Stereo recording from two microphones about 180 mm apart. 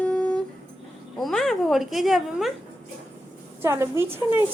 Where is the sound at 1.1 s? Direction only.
Centre (ahead or behind).